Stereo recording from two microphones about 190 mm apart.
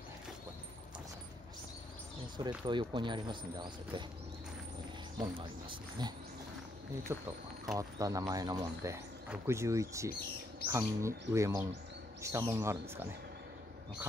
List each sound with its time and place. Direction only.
2.6 s speech: 25° right (ahead or behind)
5.2 s speech: 25° right (ahead or behind)
7.1 s speech: 15° right (ahead or behind)